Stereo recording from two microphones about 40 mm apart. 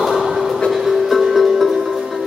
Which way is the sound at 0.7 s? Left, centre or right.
Centre.